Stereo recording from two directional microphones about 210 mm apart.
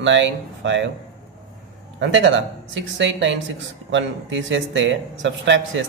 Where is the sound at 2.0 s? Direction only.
60° right (ahead or behind).